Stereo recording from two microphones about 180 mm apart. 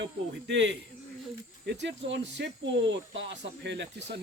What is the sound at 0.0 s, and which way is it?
Speech, 80° right.